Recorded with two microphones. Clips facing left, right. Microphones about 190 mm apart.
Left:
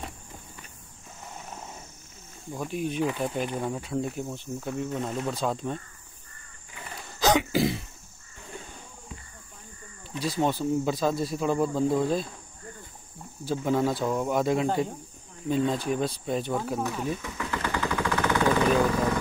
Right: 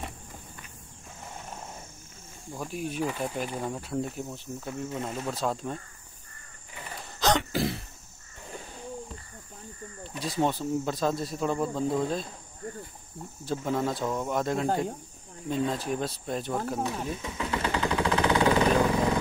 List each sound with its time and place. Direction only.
2.5 s speech: centre (ahead or behind)
7.2 s throat clearing: 5° left (ahead or behind)
10.2 s speech: centre (ahead or behind)
13.5 s speech: centre (ahead or behind)
16.8 s machine gun: 20° right (ahead or behind)